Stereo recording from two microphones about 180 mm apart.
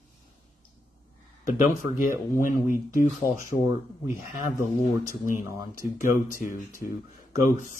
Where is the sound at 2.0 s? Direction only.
50° left (ahead or behind).